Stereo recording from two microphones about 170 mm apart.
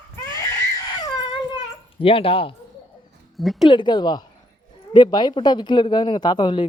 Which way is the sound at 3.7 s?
25° left (ahead or behind).